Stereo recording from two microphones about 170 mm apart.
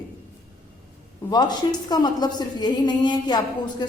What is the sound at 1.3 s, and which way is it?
A woman's voice, 25° left (ahead or behind).